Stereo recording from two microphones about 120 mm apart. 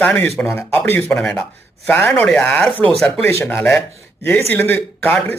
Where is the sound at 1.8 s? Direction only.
15° left (ahead or behind).